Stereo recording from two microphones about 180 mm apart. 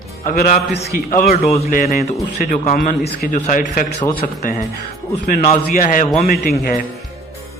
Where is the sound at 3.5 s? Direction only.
45° left (ahead or behind).